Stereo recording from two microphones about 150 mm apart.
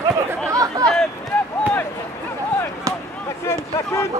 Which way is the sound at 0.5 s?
25° right (ahead or behind).